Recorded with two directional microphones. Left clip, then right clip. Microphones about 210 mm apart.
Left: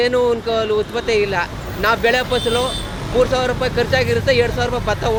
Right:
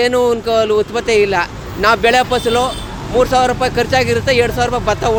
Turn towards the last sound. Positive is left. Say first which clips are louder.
# right 4 dB
turn(degrees=-50)  # may be behind; listen again after turning